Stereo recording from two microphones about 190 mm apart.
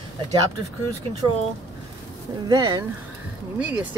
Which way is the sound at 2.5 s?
20° right (ahead or behind).